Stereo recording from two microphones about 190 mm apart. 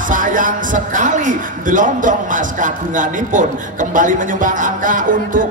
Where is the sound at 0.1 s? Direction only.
45° right (ahead or behind).